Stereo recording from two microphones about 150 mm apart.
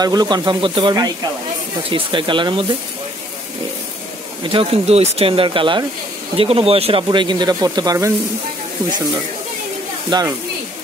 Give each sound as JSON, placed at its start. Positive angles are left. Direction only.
{"t": 0.0, "sound": "speech", "side_deg": -25}
{"t": 4.4, "sound": "speech", "side_deg": -35}
{"t": 10.0, "sound": "speech", "side_deg": -30}